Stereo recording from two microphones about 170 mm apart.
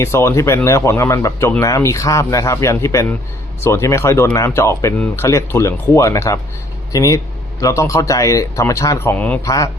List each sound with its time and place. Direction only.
0.0 s speech: 15° left (ahead or behind)